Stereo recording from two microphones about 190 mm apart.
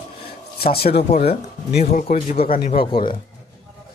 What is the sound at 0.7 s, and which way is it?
Speech, 55° left (ahead or behind).